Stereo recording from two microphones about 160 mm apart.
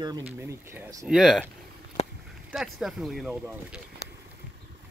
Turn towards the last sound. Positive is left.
turn(degrees=-5)  # may be behind; listen again after turning